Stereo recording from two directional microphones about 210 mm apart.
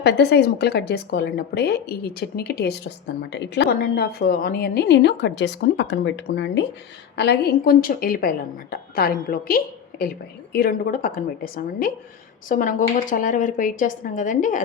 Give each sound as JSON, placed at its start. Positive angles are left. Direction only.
{"t": 0.0, "sound": "a woman's voice", "side_deg": 55}